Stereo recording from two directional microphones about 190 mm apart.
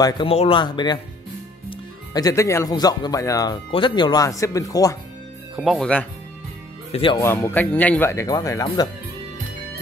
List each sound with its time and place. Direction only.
0.0 s speech: 30° left (ahead or behind)
5.6 s speech: centre (ahead or behind)
6.9 s speech: 30° left (ahead or behind)
7.2 s speech: 15° left (ahead or behind)